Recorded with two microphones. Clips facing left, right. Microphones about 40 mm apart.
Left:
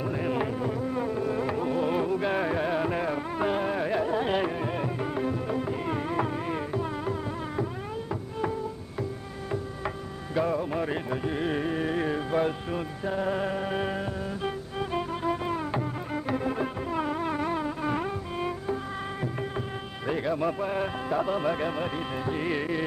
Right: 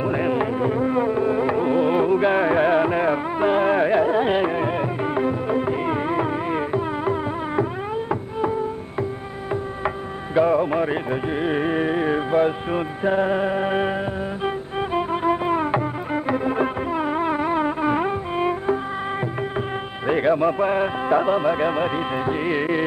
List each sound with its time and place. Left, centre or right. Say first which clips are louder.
0.0 s a sound: right 8 dB; right
0.3 s a sound: right 7 dB; right
0.6 s carnatic music: right 9 dB; right
9.5 s music: right 7 dB; right
12.7 s speech: right 9 dB; right
14.4 s music: right 8 dB; right
20.1 s music: right 9 dB; right
20.4 s speech: right 8 dB; right